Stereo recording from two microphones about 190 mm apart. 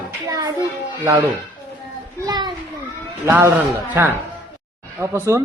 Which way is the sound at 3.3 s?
10° right (ahead or behind).